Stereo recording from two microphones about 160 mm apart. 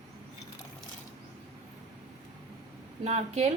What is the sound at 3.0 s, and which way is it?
Speech, 40° right (ahead or behind).